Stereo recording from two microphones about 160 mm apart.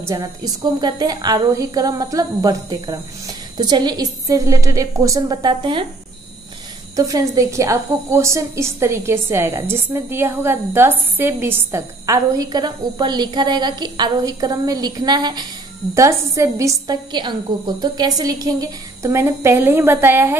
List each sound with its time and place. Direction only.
0.0 s a woman's voice: 20° right (ahead or behind)
7.0 s a woman's voice: 20° right (ahead or behind)